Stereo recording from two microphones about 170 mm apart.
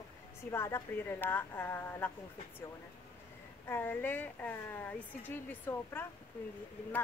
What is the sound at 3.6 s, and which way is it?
Speech, 15° left (ahead or behind).